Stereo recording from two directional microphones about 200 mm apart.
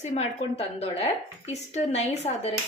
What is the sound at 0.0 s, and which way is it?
A woman's voice, 35° left (ahead or behind).